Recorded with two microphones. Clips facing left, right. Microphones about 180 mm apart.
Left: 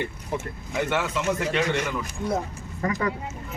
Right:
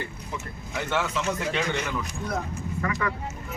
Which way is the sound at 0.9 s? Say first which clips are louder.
Even; 10° left (ahead or behind).